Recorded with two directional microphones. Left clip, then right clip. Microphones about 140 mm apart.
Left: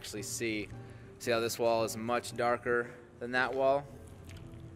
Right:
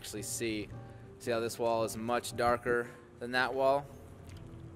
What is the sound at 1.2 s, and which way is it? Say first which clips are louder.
Speech: left 2 dB; 5° left (ahead or behind).